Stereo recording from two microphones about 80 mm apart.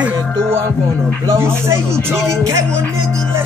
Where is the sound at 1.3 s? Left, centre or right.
Right.